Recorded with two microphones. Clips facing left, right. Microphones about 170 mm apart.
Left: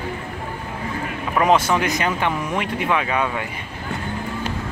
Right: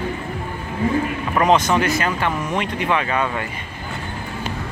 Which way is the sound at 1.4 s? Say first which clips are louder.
Right 1 dB; 5° left (ahead or behind).